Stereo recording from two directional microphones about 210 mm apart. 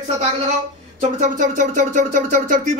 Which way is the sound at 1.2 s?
40° right (ahead or behind).